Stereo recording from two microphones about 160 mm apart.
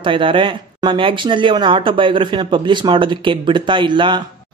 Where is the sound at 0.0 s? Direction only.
30° right (ahead or behind).